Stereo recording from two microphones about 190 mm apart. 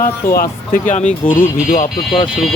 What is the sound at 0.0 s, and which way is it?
Speech, 50° left (ahead or behind).